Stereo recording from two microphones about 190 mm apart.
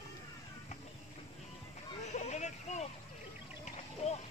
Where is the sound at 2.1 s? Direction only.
40° left (ahead or behind).